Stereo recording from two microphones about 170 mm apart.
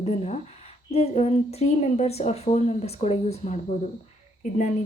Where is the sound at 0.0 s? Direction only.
40° left (ahead or behind).